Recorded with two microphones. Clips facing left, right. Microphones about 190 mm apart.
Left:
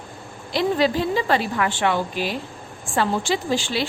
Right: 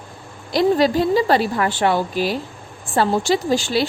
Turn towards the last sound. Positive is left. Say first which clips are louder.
# right 5 dB
turn(degrees=-40)  # may be behind; listen again after turning